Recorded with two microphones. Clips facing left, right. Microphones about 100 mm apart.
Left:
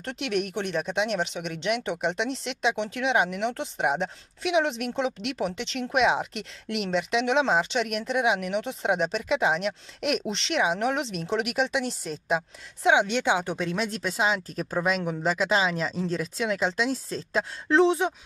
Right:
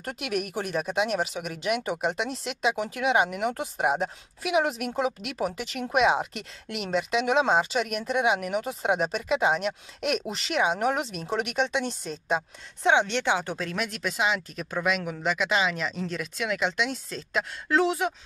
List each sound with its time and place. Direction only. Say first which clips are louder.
0.0 s speech: left 2 dB; 5° right (ahead or behind)
13.7 s speech: left 1 dB; 30° left (ahead or behind)